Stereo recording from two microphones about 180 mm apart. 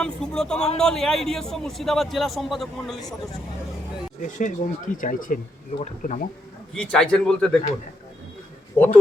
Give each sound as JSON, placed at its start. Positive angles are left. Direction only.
{"t": 0.0, "sound": "a man's voice", "side_deg": 5}
{"t": 4.2, "sound": "speech", "side_deg": 45}
{"t": 6.7, "sound": "a man's voice", "side_deg": 5}
{"t": 8.8, "sound": "speech", "side_deg": 10}